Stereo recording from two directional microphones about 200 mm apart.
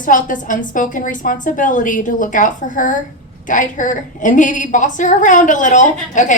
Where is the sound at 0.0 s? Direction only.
40° left (ahead or behind).